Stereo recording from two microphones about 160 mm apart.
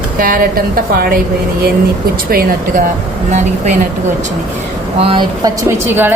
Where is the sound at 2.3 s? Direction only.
70° right (ahead or behind).